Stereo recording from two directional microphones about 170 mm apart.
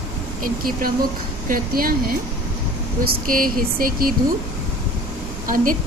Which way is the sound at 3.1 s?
55° right (ahead or behind).